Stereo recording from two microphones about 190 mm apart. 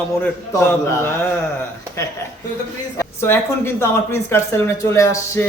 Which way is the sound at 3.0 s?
15° left (ahead or behind).